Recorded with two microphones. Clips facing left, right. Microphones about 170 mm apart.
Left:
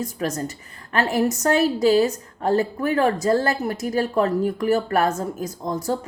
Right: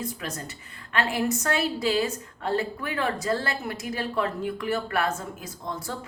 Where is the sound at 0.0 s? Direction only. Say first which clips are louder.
Left 8 dB; 40° left (ahead or behind).